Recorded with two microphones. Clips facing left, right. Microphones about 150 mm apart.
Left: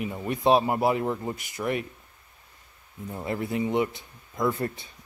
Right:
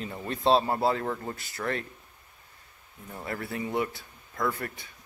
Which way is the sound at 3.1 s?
20° left (ahead or behind).